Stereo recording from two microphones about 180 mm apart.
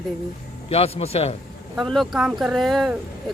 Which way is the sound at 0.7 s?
35° left (ahead or behind).